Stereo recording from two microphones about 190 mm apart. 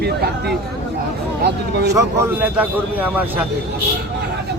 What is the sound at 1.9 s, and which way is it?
A man's voice, 10° right (ahead or behind).